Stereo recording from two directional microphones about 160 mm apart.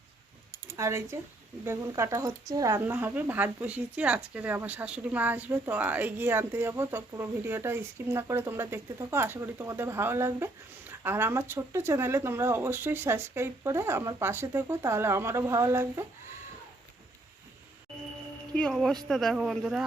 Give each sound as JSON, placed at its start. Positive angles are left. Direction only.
{"t": 0.8, "sound": "speech", "side_deg": -15}
{"t": 18.5, "sound": "speech", "side_deg": 5}